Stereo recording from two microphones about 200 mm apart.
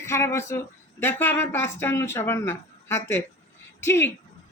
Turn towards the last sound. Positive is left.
turn(degrees=10)  # may be behind; listen again after turning